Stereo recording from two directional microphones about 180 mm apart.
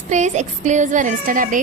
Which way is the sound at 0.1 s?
40° right (ahead or behind).